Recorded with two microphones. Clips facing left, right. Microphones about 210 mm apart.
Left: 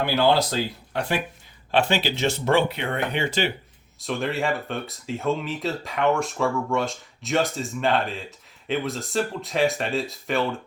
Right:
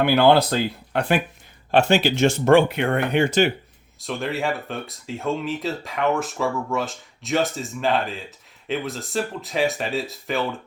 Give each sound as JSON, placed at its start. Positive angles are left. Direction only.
{"t": 0.0, "sound": "speech", "side_deg": -60}
{"t": 1.7, "sound": "speech", "side_deg": -45}
{"t": 4.0, "sound": "speech", "side_deg": 0}